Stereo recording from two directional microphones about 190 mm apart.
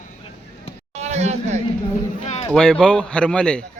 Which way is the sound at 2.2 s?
35° left (ahead or behind).